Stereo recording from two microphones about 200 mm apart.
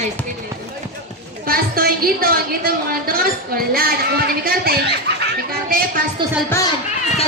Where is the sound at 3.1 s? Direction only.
50° right (ahead or behind).